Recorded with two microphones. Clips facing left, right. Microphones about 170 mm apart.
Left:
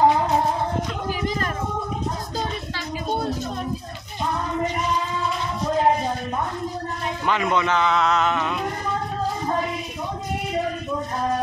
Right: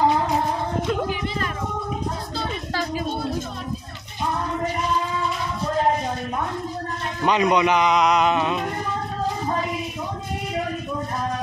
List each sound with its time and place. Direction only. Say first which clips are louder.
7.2 s a man's voice: right 4 dB; 20° right (ahead or behind)